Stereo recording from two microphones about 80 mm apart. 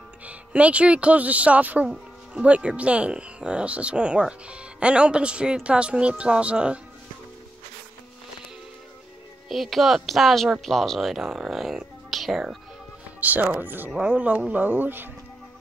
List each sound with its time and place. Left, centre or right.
0.2 s speech: centre
9.5 s a woman's voice: centre
13.2 s speech: right